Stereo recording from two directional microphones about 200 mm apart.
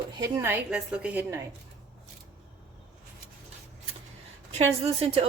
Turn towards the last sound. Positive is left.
turn(degrees=-30)  # may be behind; listen again after turning